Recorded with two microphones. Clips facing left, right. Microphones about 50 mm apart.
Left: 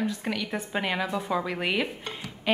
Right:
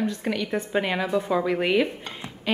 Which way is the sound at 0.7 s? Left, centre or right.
Centre.